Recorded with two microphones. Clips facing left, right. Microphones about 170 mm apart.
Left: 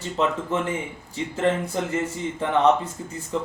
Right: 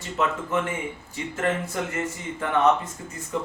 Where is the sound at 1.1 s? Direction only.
30° left (ahead or behind).